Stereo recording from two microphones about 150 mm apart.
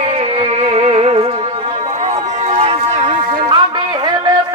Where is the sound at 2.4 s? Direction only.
45° right (ahead or behind).